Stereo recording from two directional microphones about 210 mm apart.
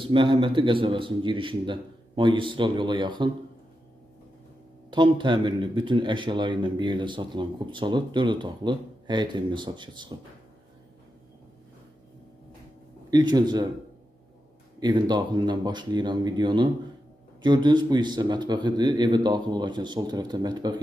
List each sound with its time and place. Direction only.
0.0 s speech: 25° right (ahead or behind)
4.9 s speech: 25° right (ahead or behind)
13.1 s speech: 20° right (ahead or behind)
14.8 s speech: 20° right (ahead or behind)